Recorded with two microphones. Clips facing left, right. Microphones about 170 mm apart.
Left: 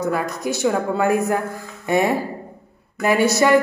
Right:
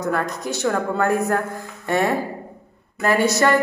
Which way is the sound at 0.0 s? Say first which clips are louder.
Left 1 dB; 10° left (ahead or behind).